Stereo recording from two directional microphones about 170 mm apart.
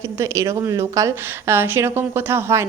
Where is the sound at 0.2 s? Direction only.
15° right (ahead or behind).